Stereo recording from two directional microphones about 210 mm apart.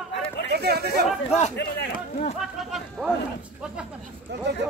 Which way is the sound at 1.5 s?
50° left (ahead or behind).